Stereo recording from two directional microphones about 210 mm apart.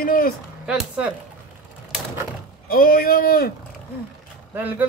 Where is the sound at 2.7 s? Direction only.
45° left (ahead or behind).